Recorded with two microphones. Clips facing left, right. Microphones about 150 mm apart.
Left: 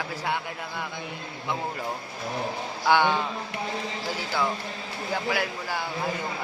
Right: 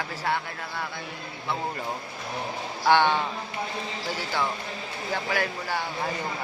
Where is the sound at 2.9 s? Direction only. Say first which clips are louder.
Right 1 dB; 10° left (ahead or behind).